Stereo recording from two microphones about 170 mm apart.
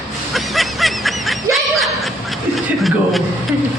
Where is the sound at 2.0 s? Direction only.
Centre (ahead or behind).